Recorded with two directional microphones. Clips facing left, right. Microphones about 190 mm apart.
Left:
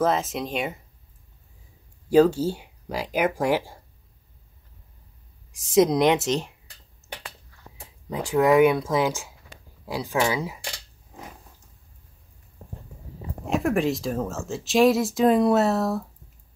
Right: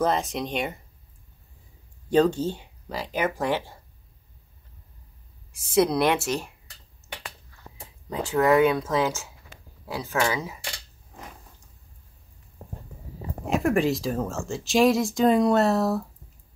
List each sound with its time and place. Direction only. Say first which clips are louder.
0.0 s speech: left 1 dB; 5° left (ahead or behind)
2.0 s speech: left 3 dB; 5° left (ahead or behind)
5.5 s speech: left 3 dB; 15° left (ahead or behind)
8.1 s speech: left 1 dB; 15° left (ahead or behind)
13.5 s speech: even; centre (ahead or behind)